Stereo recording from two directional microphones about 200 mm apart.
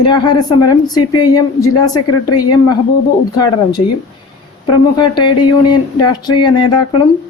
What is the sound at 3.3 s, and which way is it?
Speech, 20° left (ahead or behind).